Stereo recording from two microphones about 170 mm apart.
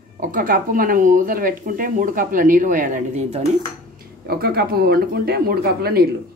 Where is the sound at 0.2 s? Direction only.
55° right (ahead or behind); by 3.4 s 40° right (ahead or behind).